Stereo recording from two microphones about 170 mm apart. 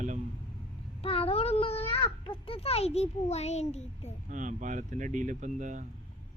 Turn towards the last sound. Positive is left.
turn(degrees=-45)  # may be behind; listen again after turning